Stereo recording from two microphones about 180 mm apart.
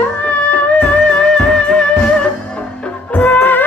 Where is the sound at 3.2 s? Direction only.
10° left (ahead or behind).